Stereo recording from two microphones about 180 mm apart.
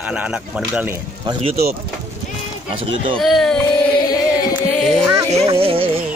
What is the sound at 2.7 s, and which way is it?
Speech, 30° right (ahead or behind).